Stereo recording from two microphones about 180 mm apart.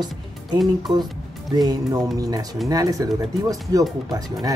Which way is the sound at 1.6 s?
20° right (ahead or behind).